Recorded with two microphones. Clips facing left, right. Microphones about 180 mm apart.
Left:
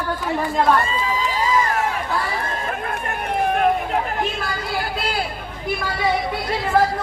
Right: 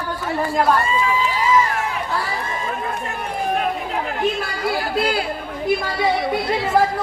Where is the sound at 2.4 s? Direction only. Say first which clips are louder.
Even; 60° left (ahead or behind).